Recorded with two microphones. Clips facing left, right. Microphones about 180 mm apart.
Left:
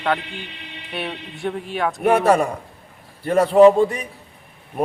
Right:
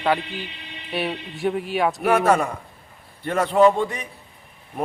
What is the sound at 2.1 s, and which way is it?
A man's voice, 35° left (ahead or behind).